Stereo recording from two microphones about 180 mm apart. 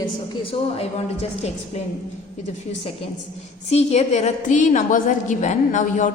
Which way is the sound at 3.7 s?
35° left (ahead or behind).